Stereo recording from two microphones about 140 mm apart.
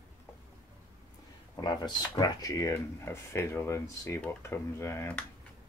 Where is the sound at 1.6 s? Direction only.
30° left (ahead or behind).